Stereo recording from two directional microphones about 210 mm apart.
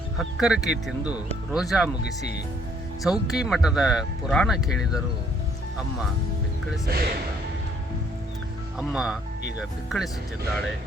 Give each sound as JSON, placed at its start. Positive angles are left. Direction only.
{"t": 0.2, "sound": "speech", "side_deg": 0}
{"t": 3.0, "sound": "speech", "side_deg": 0}
{"t": 6.9, "sound": "speech", "side_deg": -50}
{"t": 8.8, "sound": "speech", "side_deg": -5}